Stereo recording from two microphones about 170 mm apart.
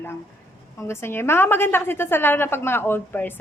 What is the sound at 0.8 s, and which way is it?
A woman's voice, 15° left (ahead or behind).